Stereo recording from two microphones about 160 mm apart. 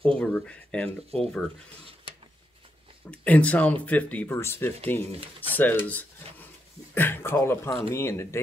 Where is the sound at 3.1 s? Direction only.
10° left (ahead or behind).